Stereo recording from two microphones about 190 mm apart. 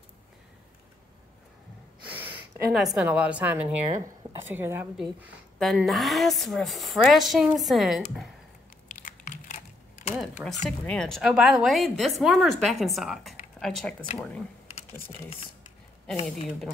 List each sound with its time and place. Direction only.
2.0 s a sound: 10° right (ahead or behind)
3.0 s a woman's voice: 5° right (ahead or behind)
9.0 s typing: 45° left (ahead or behind)
10.1 s a woman's voice: centre (ahead or behind)